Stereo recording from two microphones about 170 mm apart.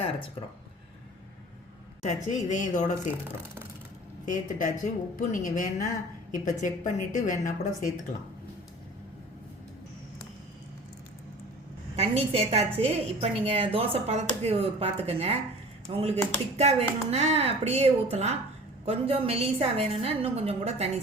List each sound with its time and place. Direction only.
2.0 s a woman's voice: 45° left (ahead or behind)
4.3 s a woman's voice: 50° left (ahead or behind)
11.9 s a woman's voice: 35° right (ahead or behind)